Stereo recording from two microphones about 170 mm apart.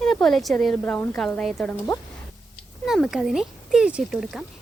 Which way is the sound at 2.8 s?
Centre (ahead or behind).